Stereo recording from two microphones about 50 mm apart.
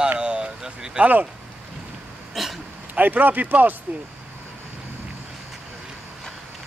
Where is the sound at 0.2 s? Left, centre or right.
Centre.